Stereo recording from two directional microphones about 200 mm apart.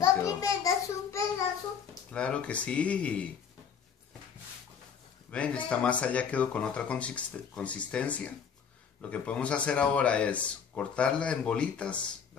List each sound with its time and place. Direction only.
0.0 s a sound: 15° left (ahead or behind)
2.1 s speech: 5° left (ahead or behind)
5.3 s speech: 5° left (ahead or behind)